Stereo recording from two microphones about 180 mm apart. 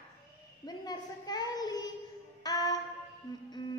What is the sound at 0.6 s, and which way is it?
A woman's voice, 20° left (ahead or behind).